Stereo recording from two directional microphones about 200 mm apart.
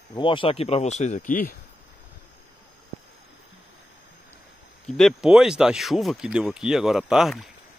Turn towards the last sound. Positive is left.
turn(degrees=0)  # may be behind; listen again after turning